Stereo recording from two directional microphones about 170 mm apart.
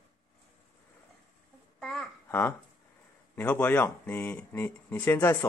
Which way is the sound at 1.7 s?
5° left (ahead or behind).